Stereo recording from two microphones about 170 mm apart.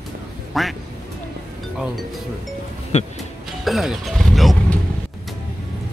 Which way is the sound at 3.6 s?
Centre (ahead or behind).